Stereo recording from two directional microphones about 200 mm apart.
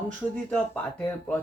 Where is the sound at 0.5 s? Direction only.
5° left (ahead or behind).